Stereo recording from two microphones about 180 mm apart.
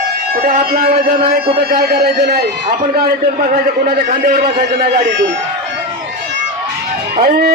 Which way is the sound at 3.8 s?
50° right (ahead or behind).